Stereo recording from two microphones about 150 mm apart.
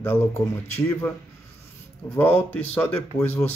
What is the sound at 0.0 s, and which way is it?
Speech, 15° left (ahead or behind).